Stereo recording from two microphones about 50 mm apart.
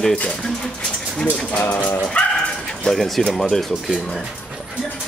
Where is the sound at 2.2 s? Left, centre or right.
Left.